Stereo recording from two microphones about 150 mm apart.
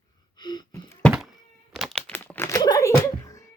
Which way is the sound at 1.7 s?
Centre (ahead or behind).